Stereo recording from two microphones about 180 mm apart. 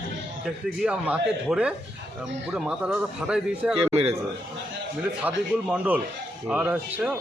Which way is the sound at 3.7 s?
35° right (ahead or behind).